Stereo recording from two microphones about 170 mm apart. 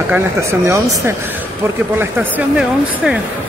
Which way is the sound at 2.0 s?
10° right (ahead or behind).